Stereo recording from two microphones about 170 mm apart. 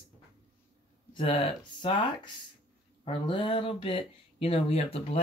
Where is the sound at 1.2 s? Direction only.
30° left (ahead or behind).